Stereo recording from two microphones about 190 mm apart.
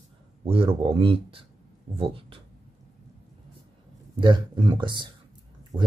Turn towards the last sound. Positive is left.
turn(degrees=-25)  # may be behind; listen again after turning